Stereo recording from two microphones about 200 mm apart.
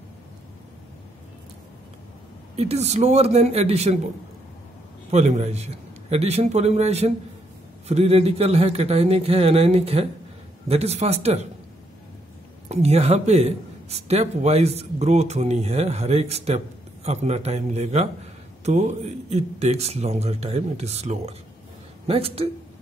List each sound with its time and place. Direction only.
2.5 s a man's voice: 30° right (ahead or behind)
5.1 s a man's voice: 35° right (ahead or behind)
12.6 s a man's voice: 30° right (ahead or behind)